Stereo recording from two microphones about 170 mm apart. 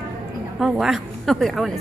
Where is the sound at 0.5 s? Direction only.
Centre (ahead or behind).